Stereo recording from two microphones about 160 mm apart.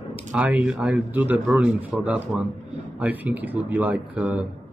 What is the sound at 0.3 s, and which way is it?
A man's voice, 10° right (ahead or behind).